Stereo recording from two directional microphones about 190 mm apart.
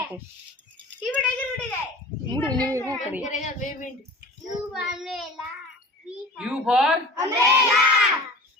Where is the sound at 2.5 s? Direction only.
20° right (ahead or behind).